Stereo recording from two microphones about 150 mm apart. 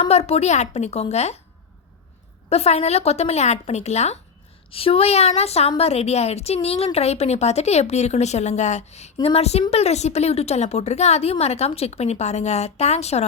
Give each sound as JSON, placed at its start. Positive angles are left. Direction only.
{"t": 0.0, "sound": "a woman's voice", "side_deg": 45}
{"t": 2.5, "sound": "a woman's voice", "side_deg": 45}